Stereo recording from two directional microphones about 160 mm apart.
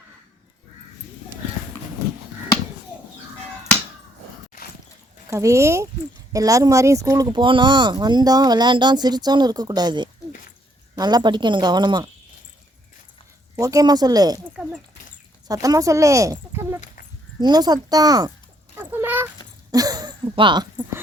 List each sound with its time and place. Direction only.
5.3 s speech: 20° right (ahead or behind)
13.6 s speech: 20° right (ahead or behind)
15.4 s speech: 20° right (ahead or behind)
16.8 s dog: 55° left (ahead or behind)
17.4 s speech: 25° right (ahead or behind)
18.8 s a sound: 10° right (ahead or behind)
19.7 s speech: 25° right (ahead or behind)